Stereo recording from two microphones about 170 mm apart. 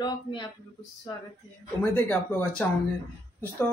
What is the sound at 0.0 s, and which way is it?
Speech, 25° left (ahead or behind).